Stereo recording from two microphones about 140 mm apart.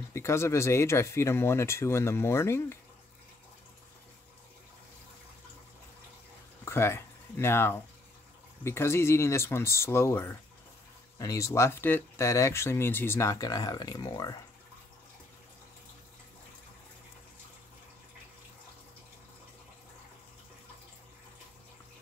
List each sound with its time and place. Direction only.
0.1 s speech: 20° left (ahead or behind)
6.6 s speech: 20° left (ahead or behind)